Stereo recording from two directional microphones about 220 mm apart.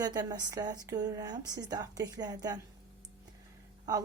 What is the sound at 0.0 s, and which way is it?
A woman's voice, 20° right (ahead or behind).